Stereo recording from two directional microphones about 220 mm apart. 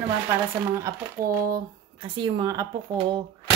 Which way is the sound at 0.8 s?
15° right (ahead or behind).